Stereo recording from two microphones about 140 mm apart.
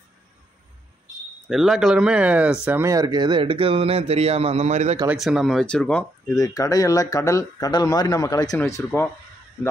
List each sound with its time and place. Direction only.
1.5 s speech: centre (ahead or behind)
2.8 s a man's voice: 25° right (ahead or behind); by 4.9 s 50° right (ahead or behind)
5.0 s speech: 5° right (ahead or behind)
6.3 s speech: 25° left (ahead or behind)